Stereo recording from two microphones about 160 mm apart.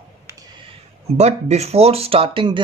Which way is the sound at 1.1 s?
45° right (ahead or behind).